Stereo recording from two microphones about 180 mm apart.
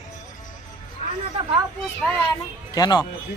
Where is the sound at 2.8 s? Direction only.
20° left (ahead or behind).